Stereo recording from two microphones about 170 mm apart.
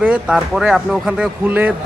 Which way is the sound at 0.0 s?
5° right (ahead or behind).